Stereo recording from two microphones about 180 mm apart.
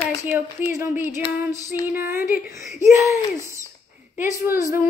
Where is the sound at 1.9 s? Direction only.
15° right (ahead or behind).